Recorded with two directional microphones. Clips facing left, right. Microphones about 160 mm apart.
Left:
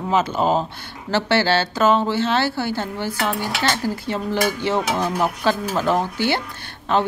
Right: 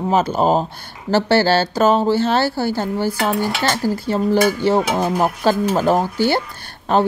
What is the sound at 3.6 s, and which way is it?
Speech, 40° right (ahead or behind).